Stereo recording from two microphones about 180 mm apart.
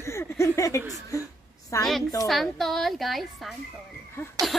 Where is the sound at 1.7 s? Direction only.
15° left (ahead or behind).